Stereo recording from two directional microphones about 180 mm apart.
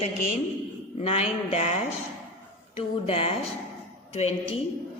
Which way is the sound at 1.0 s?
35° left (ahead or behind).